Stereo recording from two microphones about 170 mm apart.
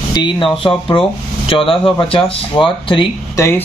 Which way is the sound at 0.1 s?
30° left (ahead or behind).